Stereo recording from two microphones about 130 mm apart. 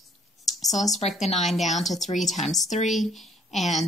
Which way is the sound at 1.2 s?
60° left (ahead or behind).